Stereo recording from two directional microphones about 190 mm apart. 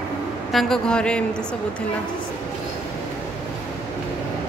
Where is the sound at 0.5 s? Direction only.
Centre (ahead or behind).